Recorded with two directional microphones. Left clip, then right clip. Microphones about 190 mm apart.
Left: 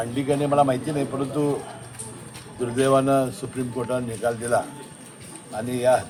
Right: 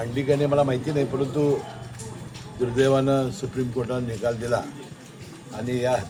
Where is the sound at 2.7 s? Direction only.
Centre (ahead or behind).